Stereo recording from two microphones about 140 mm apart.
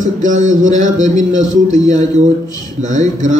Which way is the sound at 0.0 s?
65° right (ahead or behind).